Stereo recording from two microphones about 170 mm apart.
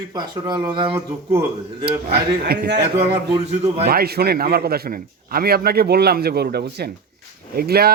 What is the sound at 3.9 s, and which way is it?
A man's voice, 65° right (ahead or behind).